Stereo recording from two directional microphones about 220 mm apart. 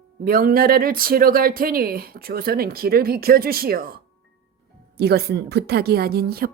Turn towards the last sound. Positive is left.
turn(degrees=-45)  # may be behind; listen again after turning